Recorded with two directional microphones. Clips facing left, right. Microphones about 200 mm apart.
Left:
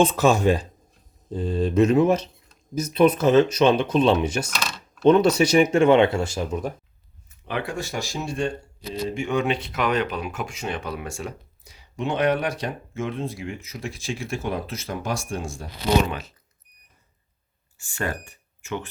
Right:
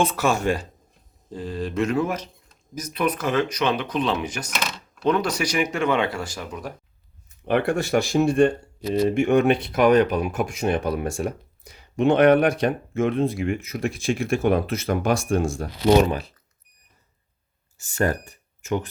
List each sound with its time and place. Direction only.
0.2 s speech: 20° left (ahead or behind)
7.4 s speech: 60° right (ahead or behind)
17.9 s speech: 40° right (ahead or behind)